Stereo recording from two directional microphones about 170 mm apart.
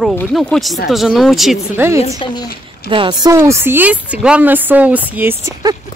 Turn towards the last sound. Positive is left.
turn(degrees=-10)  # may be behind; listen again after turning